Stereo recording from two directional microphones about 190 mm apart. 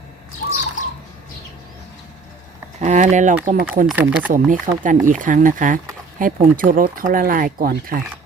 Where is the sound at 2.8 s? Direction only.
40° right (ahead or behind).